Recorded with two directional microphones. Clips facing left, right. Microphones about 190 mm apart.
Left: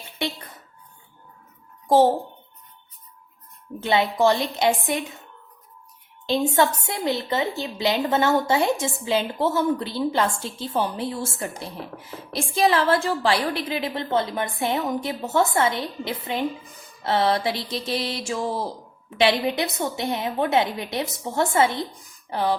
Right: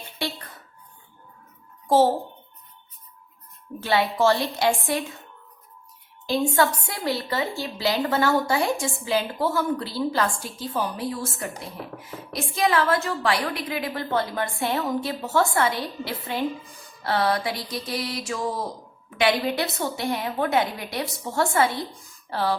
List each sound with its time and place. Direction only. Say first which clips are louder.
1.9 s a child's voice: left 2 dB; 15° left (ahead or behind)
3.8 s a woman's voice: left 1 dB; 20° left (ahead or behind)
6.2 s a woman's voice: left 1 dB; 20° left (ahead or behind)